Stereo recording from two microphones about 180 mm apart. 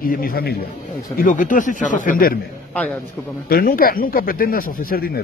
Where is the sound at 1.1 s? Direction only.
45° left (ahead or behind).